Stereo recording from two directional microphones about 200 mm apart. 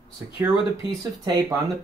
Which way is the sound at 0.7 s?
20° right (ahead or behind).